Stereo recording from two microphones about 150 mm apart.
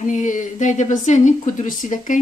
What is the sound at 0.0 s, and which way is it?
Speech, 60° left (ahead or behind).